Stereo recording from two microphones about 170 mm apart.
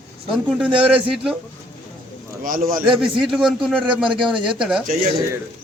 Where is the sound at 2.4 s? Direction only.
55° right (ahead or behind).